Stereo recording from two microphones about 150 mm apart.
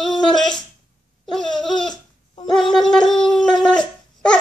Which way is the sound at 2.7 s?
5° left (ahead or behind).